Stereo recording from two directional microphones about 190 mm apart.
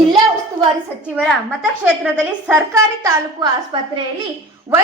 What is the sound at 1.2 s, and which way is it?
A woman's voice, centre (ahead or behind).